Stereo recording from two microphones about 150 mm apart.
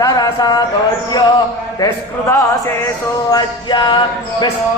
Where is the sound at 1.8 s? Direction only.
20° left (ahead or behind).